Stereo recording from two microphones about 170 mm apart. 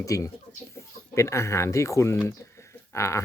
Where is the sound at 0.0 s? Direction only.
20° left (ahead or behind).